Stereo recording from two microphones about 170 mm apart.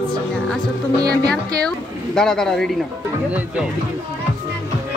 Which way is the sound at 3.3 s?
10° right (ahead or behind).